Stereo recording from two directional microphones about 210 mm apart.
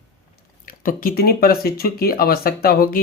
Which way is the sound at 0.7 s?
45° left (ahead or behind).